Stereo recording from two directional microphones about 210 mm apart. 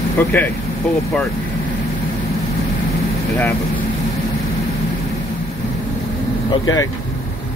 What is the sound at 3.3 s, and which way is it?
Speech, 10° left (ahead or behind).